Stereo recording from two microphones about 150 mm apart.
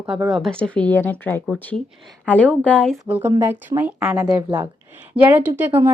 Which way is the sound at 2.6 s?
10° left (ahead or behind).